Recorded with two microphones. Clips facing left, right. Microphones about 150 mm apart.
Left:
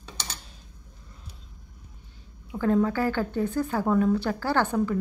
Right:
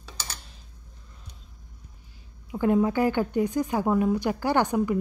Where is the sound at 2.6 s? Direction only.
15° right (ahead or behind).